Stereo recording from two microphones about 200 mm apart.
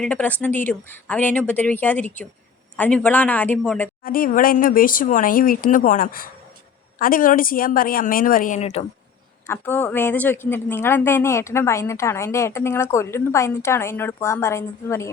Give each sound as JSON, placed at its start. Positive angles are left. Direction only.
{"t": 0.0, "sound": "speech", "side_deg": 5}
{"t": 4.0, "sound": "speech", "side_deg": 45}
{"t": 9.5, "sound": "speech", "side_deg": 10}